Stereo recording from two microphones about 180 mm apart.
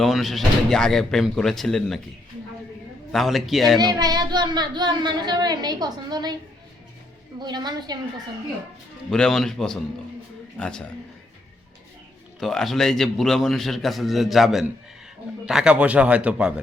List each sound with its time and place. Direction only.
0.0 s a man's voice: centre (ahead or behind)
3.1 s a man's voice: centre (ahead or behind)
3.9 s a child's voice: 20° right (ahead or behind)
7.3 s a child's voice: 25° right (ahead or behind)
9.0 s a man's voice: 5° left (ahead or behind)
12.4 s a man's voice: centre (ahead or behind)